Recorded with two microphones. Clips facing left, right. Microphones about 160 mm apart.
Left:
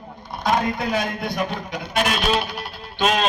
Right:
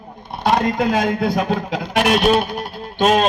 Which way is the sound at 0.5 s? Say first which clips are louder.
Right 5 dB; 90° right.